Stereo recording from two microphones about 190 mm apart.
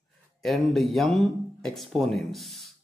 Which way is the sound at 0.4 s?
Centre (ahead or behind).